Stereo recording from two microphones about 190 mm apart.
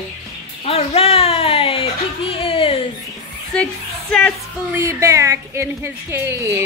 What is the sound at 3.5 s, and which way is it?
Music, 5° left (ahead or behind).